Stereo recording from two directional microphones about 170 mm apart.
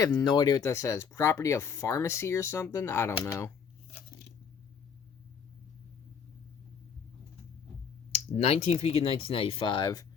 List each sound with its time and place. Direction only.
0.0 s speech: 20° left (ahead or behind)
8.3 s speech: 40° left (ahead or behind); by 10.1 s 25° left (ahead or behind)